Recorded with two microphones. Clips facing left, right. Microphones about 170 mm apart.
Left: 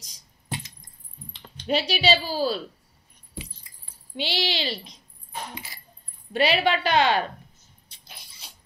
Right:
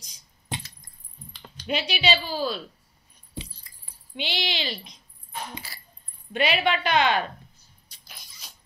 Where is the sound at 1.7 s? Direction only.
40° left (ahead or behind).